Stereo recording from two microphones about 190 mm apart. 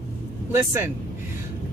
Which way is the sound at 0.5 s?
10° right (ahead or behind).